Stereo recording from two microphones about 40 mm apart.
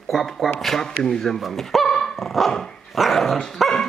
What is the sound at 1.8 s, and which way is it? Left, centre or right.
Dog, centre.